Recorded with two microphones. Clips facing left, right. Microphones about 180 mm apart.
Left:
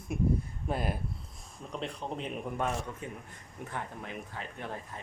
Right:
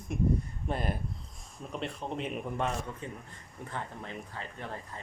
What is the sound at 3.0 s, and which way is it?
Speech, 10° left (ahead or behind).